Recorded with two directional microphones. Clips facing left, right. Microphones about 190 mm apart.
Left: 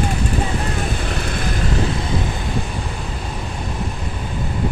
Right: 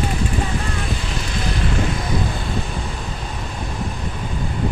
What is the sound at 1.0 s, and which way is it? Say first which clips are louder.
Vehicle: left 3 dB; 55° left (ahead or behind).